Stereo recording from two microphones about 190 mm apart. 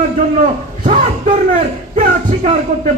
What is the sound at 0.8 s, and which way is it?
Speech, 40° right (ahead or behind).